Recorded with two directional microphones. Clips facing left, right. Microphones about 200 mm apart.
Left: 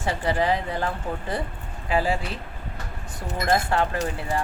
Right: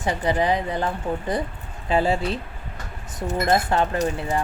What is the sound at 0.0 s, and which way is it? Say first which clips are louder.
Speech: right 2 dB; 20° right (ahead or behind).